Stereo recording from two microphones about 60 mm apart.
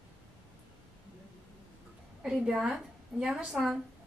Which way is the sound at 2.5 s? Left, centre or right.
Centre.